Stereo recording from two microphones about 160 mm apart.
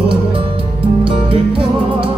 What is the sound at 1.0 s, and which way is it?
Music, 35° right (ahead or behind).